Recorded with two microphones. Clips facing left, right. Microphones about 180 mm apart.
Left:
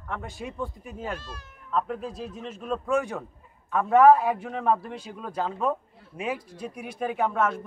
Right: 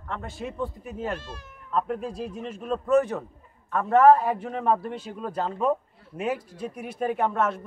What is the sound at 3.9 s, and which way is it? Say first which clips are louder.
A man's voice: even; 10° left (ahead or behind).